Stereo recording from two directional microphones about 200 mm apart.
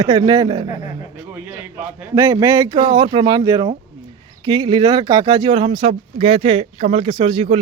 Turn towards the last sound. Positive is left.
turn(degrees=-25)  # may be behind; listen again after turning